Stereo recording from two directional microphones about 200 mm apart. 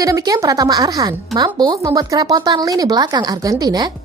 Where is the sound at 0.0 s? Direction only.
20° right (ahead or behind).